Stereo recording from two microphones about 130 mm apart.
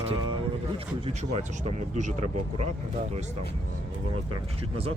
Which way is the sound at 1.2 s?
60° right (ahead or behind).